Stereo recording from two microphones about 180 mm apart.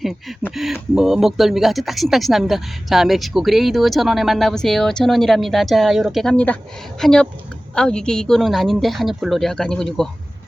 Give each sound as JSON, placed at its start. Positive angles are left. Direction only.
{"t": 0.0, "sound": "speech", "side_deg": 0}